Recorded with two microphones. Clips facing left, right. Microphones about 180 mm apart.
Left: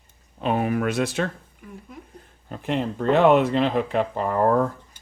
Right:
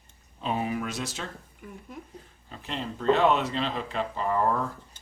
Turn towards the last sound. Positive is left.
turn(degrees=50)  # may be behind; listen again after turning